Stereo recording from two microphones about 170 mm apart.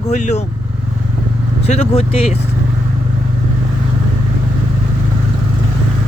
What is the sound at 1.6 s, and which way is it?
Speech, 40° left (ahead or behind).